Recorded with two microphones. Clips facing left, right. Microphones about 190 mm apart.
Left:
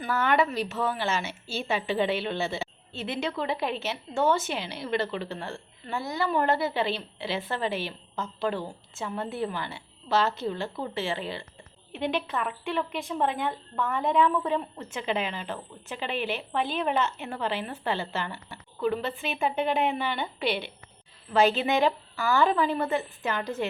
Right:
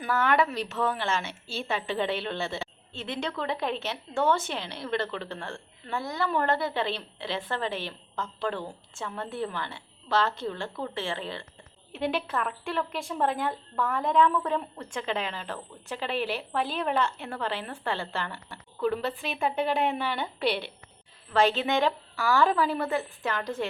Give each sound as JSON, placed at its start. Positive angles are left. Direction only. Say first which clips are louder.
{"t": 0.0, "sound": "a woman's voice", "louder": "even", "side_deg": 0}
{"t": 11.9, "sound": "a woman's voice", "louder": "even", "side_deg": -5}